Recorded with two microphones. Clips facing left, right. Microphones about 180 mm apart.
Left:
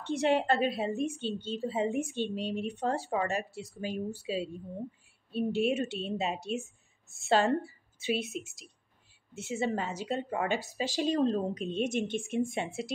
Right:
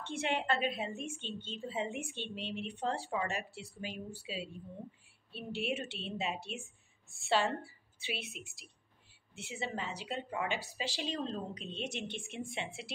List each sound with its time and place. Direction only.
0.0 s a woman's voice: 40° left (ahead or behind)